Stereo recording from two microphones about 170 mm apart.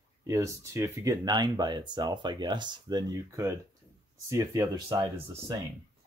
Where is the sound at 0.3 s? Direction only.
15° right (ahead or behind).